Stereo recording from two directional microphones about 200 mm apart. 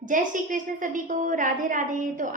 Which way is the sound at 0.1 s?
40° right (ahead or behind).